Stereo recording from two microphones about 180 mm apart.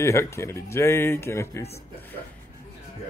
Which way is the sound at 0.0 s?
15° left (ahead or behind).